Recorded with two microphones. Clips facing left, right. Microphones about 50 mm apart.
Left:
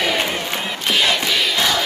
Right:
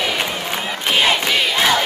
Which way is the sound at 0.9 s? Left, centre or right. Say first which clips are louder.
Right 2 dB; right.